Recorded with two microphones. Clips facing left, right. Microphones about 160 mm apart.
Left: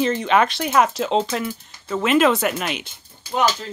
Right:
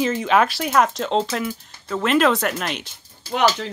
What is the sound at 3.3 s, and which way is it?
Speech, 75° right (ahead or behind).